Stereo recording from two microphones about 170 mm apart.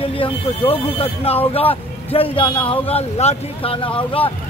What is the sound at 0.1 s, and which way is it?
Speech, 35° left (ahead or behind).